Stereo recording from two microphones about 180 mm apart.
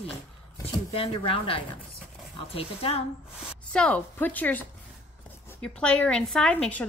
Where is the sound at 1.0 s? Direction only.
30° left (ahead or behind).